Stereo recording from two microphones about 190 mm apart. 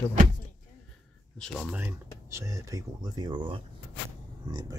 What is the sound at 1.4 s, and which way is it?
Speech, 5° right (ahead or behind).